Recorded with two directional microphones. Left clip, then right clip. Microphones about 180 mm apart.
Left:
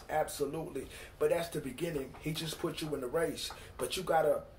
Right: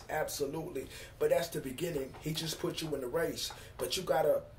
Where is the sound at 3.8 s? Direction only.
15° right (ahead or behind).